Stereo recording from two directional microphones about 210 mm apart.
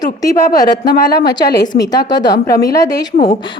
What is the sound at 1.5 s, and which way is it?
Speech, 50° left (ahead or behind).